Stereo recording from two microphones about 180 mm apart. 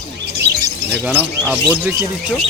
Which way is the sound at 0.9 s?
10° right (ahead or behind).